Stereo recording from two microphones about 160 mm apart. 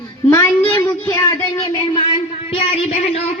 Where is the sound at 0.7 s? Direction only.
20° left (ahead or behind).